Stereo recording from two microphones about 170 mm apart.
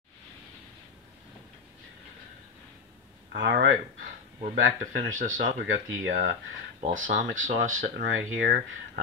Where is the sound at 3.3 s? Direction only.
60° right (ahead or behind).